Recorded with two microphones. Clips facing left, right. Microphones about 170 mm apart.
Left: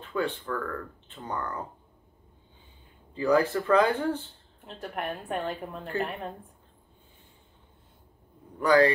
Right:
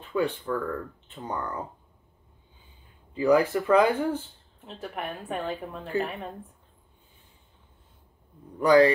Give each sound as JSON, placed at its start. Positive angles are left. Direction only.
{"t": 0.1, "sound": "speech", "side_deg": -15}
{"t": 3.2, "sound": "speech", "side_deg": -15}
{"t": 4.6, "sound": "a woman's voice", "side_deg": 0}
{"t": 8.5, "sound": "speech", "side_deg": -20}